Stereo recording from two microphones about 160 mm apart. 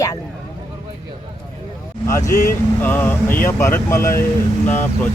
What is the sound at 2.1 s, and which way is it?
Speech, 20° left (ahead or behind).